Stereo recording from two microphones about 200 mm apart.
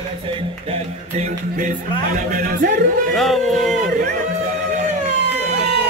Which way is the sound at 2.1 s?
40° right (ahead or behind).